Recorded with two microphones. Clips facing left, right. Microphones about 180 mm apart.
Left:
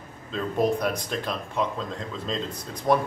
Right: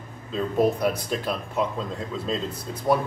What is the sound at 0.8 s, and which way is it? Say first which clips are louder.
Speech: right 2 dB; 5° right (ahead or behind).